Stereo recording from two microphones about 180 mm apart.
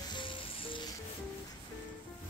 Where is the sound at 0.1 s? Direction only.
30° left (ahead or behind).